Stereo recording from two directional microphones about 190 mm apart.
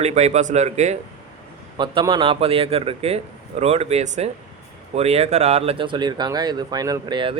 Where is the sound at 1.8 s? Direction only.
25° right (ahead or behind).